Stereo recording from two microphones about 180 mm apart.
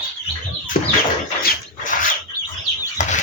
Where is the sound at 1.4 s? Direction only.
50° left (ahead or behind).